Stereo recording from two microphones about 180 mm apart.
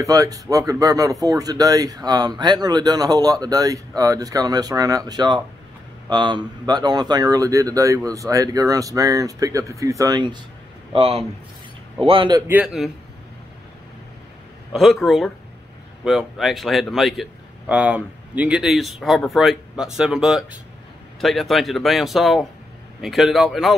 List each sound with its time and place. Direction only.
0.0 s speech: 20° right (ahead or behind)
12.4 s a man's voice: 5° right (ahead or behind)
14.7 s a man's voice: centre (ahead or behind)